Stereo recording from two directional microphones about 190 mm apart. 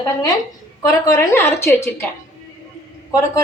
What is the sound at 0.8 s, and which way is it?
A woman's voice, 15° left (ahead or behind).